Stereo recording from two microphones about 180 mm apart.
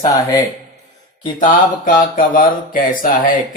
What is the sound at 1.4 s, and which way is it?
Speech, 45° left (ahead or behind).